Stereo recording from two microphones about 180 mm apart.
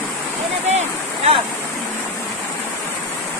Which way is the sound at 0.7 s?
35° right (ahead or behind).